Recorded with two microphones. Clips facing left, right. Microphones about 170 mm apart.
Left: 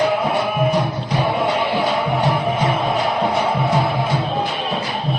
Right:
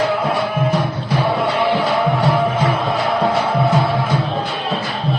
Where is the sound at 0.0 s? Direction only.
20° left (ahead or behind).